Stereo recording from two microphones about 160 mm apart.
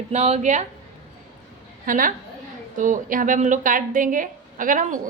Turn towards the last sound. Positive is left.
turn(degrees=-55)  # may be behind; listen again after turning